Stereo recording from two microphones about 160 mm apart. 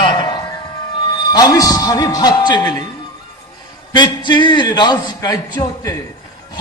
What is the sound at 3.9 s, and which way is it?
Speech, 30° left (ahead or behind).